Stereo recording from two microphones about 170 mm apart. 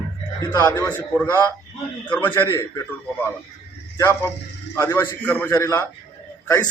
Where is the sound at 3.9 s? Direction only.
15° left (ahead or behind).